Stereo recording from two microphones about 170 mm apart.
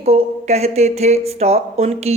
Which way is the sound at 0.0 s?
40° right (ahead or behind).